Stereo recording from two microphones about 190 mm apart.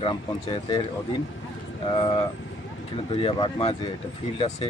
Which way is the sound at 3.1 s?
30° left (ahead or behind).